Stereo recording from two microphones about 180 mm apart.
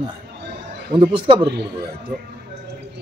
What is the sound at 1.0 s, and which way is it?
Speech, 25° right (ahead or behind).